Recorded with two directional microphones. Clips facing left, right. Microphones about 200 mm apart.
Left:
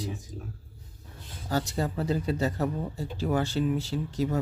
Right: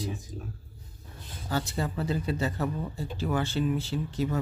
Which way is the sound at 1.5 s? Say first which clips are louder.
Left 2 dB; 40° left (ahead or behind).